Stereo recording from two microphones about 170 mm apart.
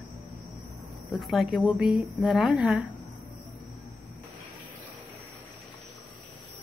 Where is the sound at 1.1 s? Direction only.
Centre (ahead or behind).